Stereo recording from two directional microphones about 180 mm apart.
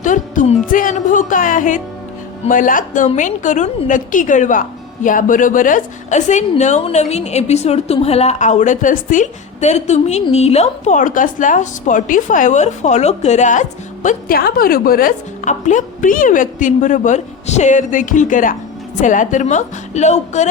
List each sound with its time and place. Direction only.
0.0 s music: 45° left (ahead or behind)
2.5 s a woman's voice: 50° left (ahead or behind)